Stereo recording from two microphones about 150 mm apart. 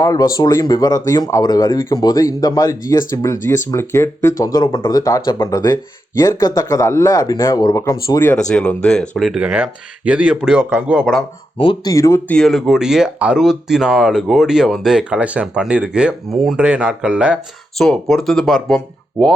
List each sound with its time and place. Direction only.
0.0 s speech: 25° left (ahead or behind)
8.4 s speech: 5° left (ahead or behind); by 11.1 s 10° right (ahead or behind)
11.5 s speech: 35° left (ahead or behind)
11.9 s speech: 20° left (ahead or behind)
12.3 s speech: centre (ahead or behind)